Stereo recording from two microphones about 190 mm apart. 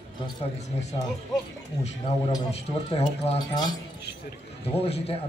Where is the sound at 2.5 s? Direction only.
35° left (ahead or behind).